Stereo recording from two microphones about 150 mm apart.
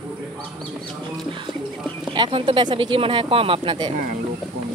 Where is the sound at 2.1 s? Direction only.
35° right (ahead or behind).